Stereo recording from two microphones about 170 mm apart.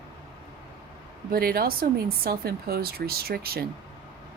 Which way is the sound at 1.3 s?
60° right (ahead or behind).